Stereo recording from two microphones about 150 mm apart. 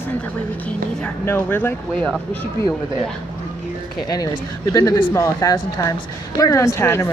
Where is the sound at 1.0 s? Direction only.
15° left (ahead or behind).